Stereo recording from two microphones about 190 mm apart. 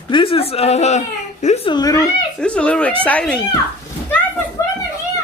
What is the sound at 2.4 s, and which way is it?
Speech, 5° left (ahead or behind).